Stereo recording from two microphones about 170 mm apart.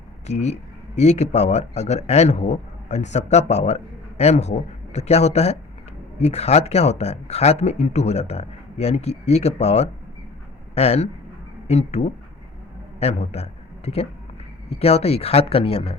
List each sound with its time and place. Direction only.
0.3 s a man's voice: 40° left (ahead or behind)